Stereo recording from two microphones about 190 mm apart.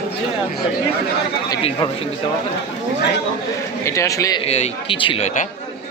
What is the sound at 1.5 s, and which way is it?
Speech, 20° left (ahead or behind).